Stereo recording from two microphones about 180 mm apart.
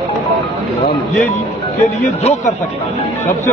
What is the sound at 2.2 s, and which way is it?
Speech, 35° left (ahead or behind).